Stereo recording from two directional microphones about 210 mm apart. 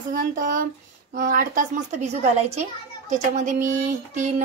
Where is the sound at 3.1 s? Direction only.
35° right (ahead or behind).